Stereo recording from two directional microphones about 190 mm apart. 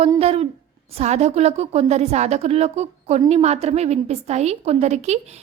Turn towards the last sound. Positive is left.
turn(degrees=-35)  # may be behind; listen again after turning